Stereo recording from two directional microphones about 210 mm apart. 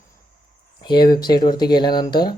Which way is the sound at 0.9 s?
20° left (ahead or behind).